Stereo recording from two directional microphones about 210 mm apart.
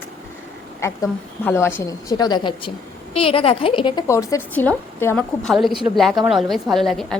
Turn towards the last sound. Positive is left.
turn(degrees=0)  # may be behind; listen again after turning